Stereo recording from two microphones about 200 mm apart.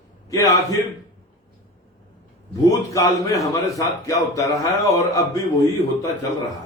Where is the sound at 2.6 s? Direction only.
15° left (ahead or behind).